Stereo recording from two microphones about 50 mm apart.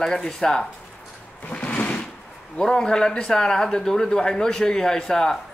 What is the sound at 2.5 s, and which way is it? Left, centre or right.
Speech, centre.